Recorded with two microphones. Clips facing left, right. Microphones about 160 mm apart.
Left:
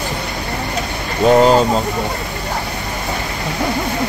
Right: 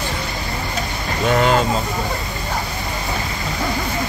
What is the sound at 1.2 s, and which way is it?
Speech, 35° left (ahead or behind).